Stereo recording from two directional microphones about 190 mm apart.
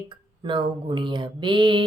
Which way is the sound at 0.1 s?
25° right (ahead or behind).